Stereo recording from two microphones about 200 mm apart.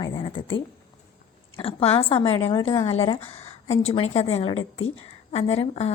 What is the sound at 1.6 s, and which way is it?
A woman's voice, 30° left (ahead or behind).